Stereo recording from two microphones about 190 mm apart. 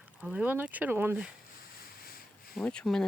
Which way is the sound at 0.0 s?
5° right (ahead or behind).